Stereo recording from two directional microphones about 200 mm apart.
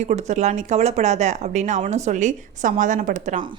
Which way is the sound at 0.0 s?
35° right (ahead or behind).